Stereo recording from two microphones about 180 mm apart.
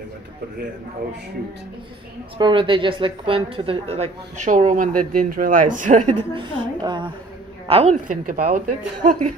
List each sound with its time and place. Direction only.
2.3 s a woman's voice: 25° right (ahead or behind)
6.3 s a woman's voice: 25° right (ahead or behind); by 9.1 s 45° right (ahead or behind)